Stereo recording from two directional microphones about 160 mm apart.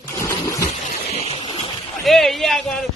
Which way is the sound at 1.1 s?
40° left (ahead or behind).